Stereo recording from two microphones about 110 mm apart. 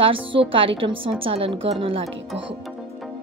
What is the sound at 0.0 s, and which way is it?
Speech, 55° right (ahead or behind).